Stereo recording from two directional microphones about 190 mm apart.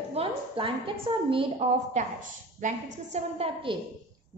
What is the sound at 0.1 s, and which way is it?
A woman's voice, 30° right (ahead or behind).